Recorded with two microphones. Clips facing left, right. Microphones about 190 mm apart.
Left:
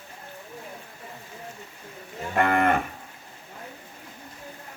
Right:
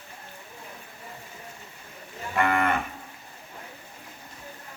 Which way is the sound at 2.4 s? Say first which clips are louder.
Left 3 dB; 45° left (ahead or behind).